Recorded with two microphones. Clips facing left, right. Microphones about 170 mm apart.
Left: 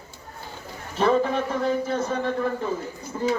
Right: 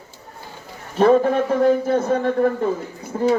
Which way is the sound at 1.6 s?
55° right (ahead or behind).